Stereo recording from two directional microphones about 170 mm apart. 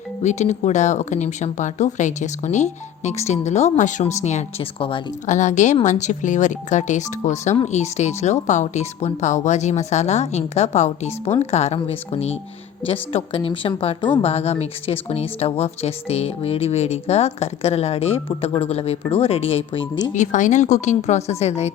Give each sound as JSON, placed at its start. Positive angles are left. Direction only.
{"t": 0.2, "sound": "speech", "side_deg": 45}
{"t": 5.2, "sound": "speech", "side_deg": 45}
{"t": 20.1, "sound": "speech", "side_deg": 45}